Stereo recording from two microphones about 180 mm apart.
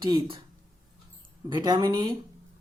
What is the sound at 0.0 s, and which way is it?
Speech, 30° right (ahead or behind).